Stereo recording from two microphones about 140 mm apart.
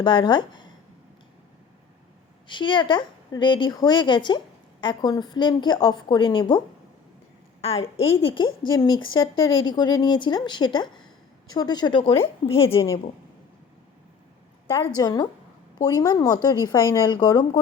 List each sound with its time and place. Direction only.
0.0 s speech: 35° left (ahead or behind)
2.5 s speech: 35° left (ahead or behind)
7.6 s a woman's voice: 45° left (ahead or behind)
14.9 s a woman's voice: 30° left (ahead or behind)